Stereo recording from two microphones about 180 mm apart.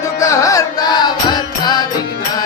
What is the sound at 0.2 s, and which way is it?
Music, 15° left (ahead or behind).